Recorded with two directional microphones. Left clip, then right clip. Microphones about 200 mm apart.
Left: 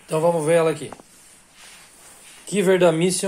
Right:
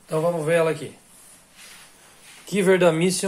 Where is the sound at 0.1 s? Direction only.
35° left (ahead or behind).